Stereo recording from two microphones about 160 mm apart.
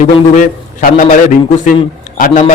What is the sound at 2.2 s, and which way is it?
Speech, 55° left (ahead or behind).